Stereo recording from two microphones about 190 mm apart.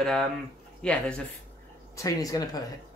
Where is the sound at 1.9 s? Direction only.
20° left (ahead or behind).